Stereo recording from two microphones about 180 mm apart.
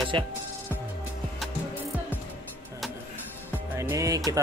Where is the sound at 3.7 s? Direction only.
15° right (ahead or behind).